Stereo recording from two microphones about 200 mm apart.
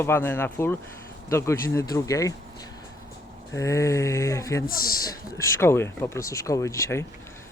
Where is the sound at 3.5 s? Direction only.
15° left (ahead or behind).